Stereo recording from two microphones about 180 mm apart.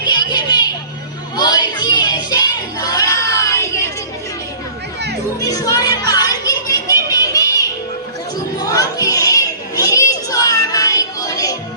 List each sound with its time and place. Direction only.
0.0 s music: 25° left (ahead or behind)
5.4 s speech: 20° left (ahead or behind)
6.1 s music: 20° left (ahead or behind)
8.5 s children playing: 20° left (ahead or behind)